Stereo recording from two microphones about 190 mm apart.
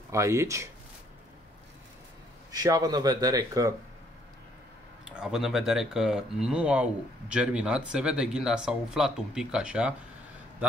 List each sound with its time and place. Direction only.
0.1 s speech: 15° right (ahead or behind)
2.5 s speech: 20° right (ahead or behind)
5.0 s speech: 5° right (ahead or behind)